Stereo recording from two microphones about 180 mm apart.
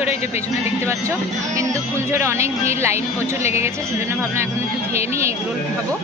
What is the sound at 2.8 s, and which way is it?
Speech, 15° right (ahead or behind).